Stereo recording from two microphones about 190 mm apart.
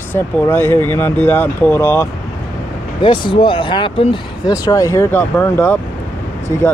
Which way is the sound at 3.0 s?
25° left (ahead or behind).